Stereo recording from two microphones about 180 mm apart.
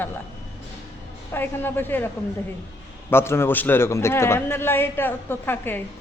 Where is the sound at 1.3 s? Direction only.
10° left (ahead or behind).